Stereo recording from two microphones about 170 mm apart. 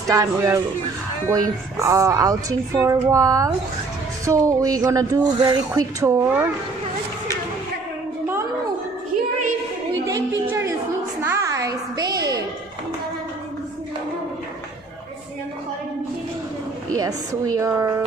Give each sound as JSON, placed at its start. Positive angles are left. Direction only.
{"t": 0.1, "sound": "speech", "side_deg": -20}
{"t": 11.2, "sound": "a sound", "side_deg": -15}
{"t": 16.9, "sound": "a woman's voice", "side_deg": -20}